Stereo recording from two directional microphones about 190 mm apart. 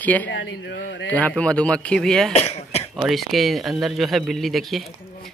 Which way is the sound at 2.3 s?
35° left (ahead or behind).